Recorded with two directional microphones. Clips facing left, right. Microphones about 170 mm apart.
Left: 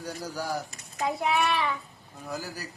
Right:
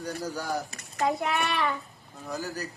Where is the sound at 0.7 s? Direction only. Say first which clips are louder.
Right 2 dB; 65° right (ahead or behind).